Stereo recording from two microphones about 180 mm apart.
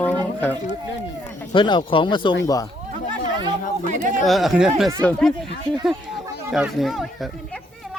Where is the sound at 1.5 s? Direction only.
25° left (ahead or behind).